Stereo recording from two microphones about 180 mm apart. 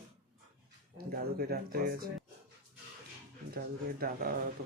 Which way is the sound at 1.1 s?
55° right (ahead or behind).